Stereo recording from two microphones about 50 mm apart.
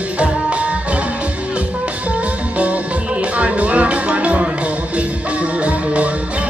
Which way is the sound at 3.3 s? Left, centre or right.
Right.